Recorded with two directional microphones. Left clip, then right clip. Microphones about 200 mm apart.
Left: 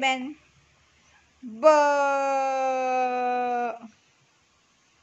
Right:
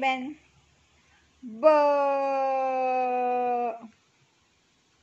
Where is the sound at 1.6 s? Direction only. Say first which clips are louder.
Left 2 dB; 20° left (ahead or behind).